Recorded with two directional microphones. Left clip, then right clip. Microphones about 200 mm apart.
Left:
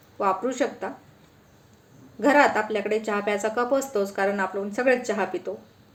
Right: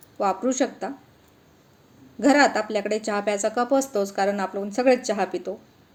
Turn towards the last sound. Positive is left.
turn(degrees=-40)  # may be behind; listen again after turning